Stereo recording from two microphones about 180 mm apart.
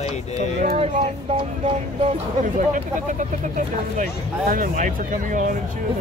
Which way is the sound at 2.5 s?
45° right (ahead or behind).